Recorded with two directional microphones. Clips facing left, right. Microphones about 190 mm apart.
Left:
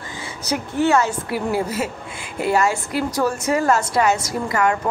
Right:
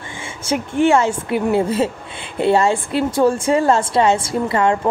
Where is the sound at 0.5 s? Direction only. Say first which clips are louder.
Right 3 dB; 25° right (ahead or behind).